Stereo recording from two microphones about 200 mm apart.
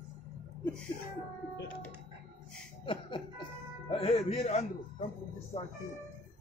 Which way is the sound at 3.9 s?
30° left (ahead or behind).